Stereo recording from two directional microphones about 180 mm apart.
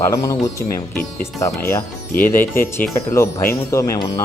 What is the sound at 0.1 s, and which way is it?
Speech, 15° left (ahead or behind).